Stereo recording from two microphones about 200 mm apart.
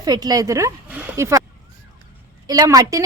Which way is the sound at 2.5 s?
20° right (ahead or behind).